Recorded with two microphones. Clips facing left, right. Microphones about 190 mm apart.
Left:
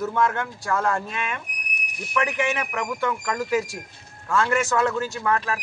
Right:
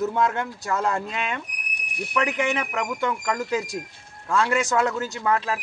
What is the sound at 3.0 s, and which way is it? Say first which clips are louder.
Speech: left 1 dB; 20° right (ahead or behind).